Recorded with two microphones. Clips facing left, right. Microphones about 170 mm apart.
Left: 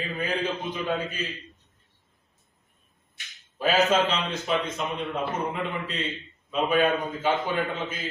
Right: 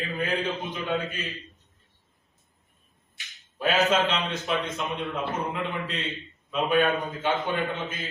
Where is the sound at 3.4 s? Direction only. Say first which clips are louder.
Left 1 dB; centre (ahead or behind).